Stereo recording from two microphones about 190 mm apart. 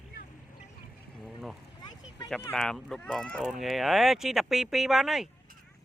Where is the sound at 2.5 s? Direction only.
5° left (ahead or behind).